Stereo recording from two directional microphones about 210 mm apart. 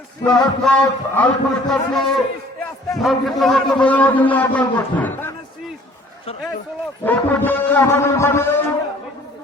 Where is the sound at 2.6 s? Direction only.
Centre (ahead or behind).